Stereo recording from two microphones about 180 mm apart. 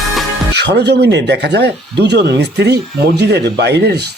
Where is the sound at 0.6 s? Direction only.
70° right (ahead or behind).